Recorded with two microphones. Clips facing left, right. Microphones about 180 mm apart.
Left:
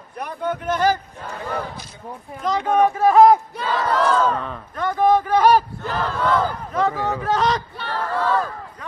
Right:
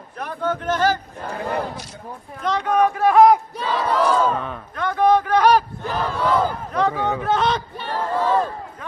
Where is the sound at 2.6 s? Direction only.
25° left (ahead or behind).